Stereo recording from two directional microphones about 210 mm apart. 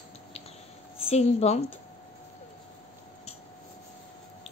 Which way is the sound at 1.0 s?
30° left (ahead or behind).